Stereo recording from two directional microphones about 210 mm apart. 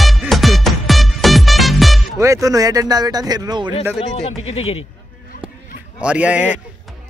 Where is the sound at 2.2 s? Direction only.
15° right (ahead or behind).